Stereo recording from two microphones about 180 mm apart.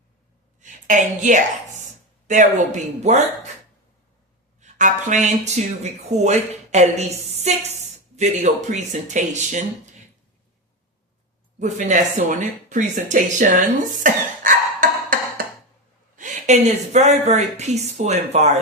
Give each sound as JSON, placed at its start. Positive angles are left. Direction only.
{"t": 0.6, "sound": "a woman's voice", "side_deg": -45}
{"t": 4.6, "sound": "speech", "side_deg": -45}
{"t": 11.6, "sound": "speech", "side_deg": -45}
{"t": 14.0, "sound": "beatboxing", "side_deg": -50}
{"t": 16.1, "sound": "speech", "side_deg": -45}